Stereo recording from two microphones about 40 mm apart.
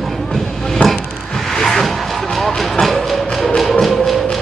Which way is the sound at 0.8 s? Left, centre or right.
Left.